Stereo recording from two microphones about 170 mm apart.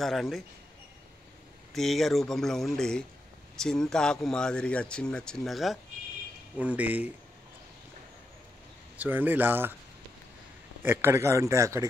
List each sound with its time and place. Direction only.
0.0 s speech: centre (ahead or behind)
1.7 s a man's voice: centre (ahead or behind)
8.9 s a man's voice: 10° right (ahead or behind)
10.8 s a man's voice: 15° right (ahead or behind)